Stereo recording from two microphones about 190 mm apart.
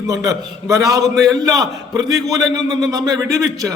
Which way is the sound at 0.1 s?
15° right (ahead or behind).